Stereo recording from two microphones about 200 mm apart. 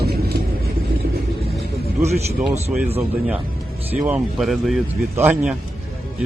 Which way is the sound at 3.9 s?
5° right (ahead or behind).